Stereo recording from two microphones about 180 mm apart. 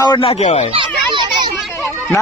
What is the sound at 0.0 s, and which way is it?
Speech, 25° left (ahead or behind).